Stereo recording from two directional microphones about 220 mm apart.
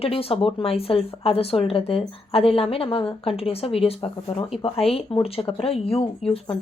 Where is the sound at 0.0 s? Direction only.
25° left (ahead or behind).